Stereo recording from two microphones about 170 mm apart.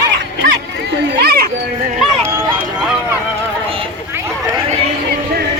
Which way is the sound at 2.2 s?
15° right (ahead or behind).